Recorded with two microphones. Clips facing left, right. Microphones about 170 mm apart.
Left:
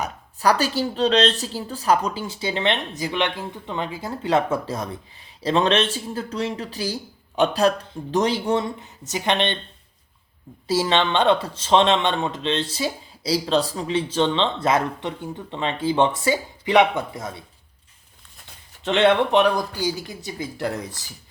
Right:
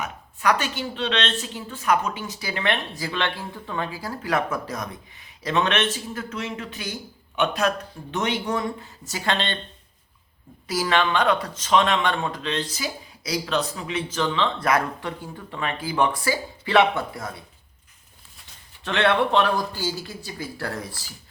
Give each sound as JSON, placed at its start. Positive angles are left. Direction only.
{"t": 0.0, "sound": "speech", "side_deg": 35}
{"t": 10.7, "sound": "speech", "side_deg": 25}
{"t": 18.9, "sound": "speech", "side_deg": 20}